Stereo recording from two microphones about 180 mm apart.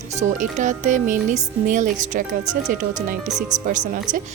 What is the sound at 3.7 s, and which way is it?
Speech, 45° right (ahead or behind).